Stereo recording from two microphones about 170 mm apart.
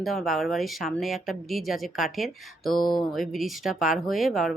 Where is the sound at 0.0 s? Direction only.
Centre (ahead or behind).